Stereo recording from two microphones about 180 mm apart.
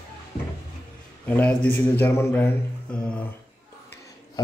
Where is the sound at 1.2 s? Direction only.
10° left (ahead or behind).